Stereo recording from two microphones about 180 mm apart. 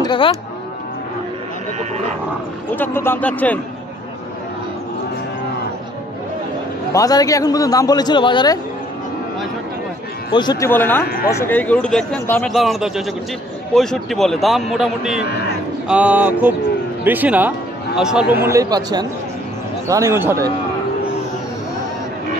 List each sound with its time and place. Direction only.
0.0 s speech: 25° left (ahead or behind)
2.7 s speech: 10° left (ahead or behind)
6.9 s a man's voice: 20° left (ahead or behind)
10.3 s a man's voice: 25° left (ahead or behind)
10.7 s a man's voice: 10° left (ahead or behind); by 18.2 s 5° right (ahead or behind)
18.3 s a man's voice: 15° right (ahead or behind)